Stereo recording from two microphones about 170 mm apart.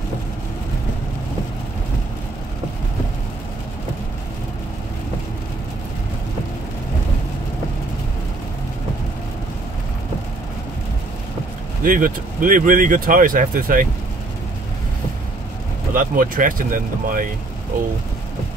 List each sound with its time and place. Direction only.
11.8 s speech: 55° right (ahead or behind)
15.9 s speech: 55° right (ahead or behind)